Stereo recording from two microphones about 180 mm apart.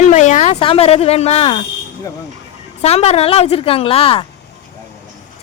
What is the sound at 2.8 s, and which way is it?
A woman's voice, 35° left (ahead or behind).